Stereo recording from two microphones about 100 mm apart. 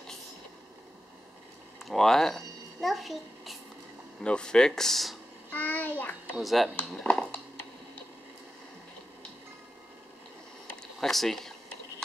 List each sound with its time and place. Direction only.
1.9 s a child's voice: 5° left (ahead or behind)
4.2 s speech: 10° left (ahead or behind)
5.5 s child singing: 15° left (ahead or behind)
6.3 s speech: centre (ahead or behind)
7.0 s speech: 10° left (ahead or behind)
10.8 s a sound: 5° left (ahead or behind)